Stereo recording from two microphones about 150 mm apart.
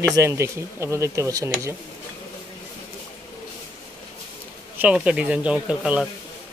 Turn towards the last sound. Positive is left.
turn(degrees=-10)  # may be behind; listen again after turning